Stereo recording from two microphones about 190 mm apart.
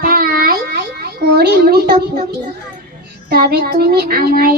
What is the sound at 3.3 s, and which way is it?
A child's voice, 55° right (ahead or behind).